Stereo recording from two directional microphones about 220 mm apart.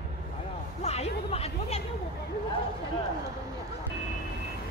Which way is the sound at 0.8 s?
30° left (ahead or behind).